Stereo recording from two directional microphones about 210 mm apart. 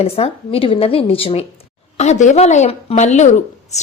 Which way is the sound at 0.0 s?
30° left (ahead or behind).